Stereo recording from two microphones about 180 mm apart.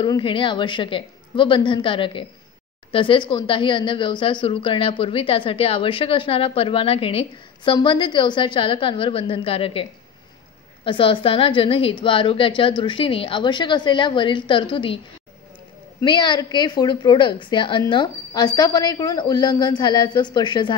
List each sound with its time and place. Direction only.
0.0 s speech: 25° left (ahead or behind)
16.0 s speech: 25° left (ahead or behind)